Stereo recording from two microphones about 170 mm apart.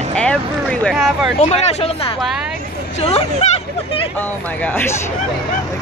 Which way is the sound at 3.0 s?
35° left (ahead or behind).